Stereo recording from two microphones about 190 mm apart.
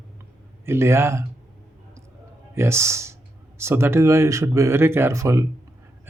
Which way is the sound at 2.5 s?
15° right (ahead or behind).